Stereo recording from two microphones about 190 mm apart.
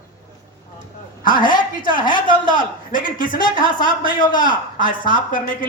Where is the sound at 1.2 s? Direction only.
45° left (ahead or behind).